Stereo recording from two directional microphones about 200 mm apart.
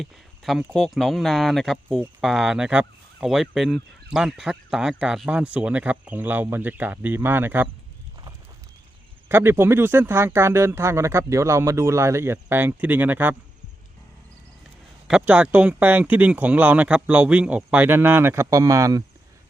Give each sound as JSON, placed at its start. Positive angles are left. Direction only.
{"t": 0.0, "sound": "speech", "side_deg": 0}
{"t": 9.3, "sound": "speech", "side_deg": -10}
{"t": 15.0, "sound": "speech", "side_deg": -5}